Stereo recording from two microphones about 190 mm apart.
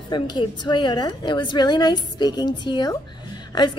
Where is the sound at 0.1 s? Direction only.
25° left (ahead or behind).